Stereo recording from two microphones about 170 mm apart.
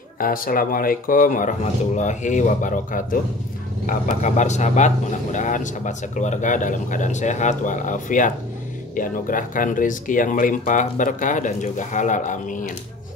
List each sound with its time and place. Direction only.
0.2 s speech: 55° left (ahead or behind)